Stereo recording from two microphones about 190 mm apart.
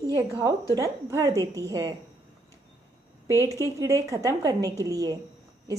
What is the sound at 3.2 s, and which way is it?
A woman's voice, 15° right (ahead or behind).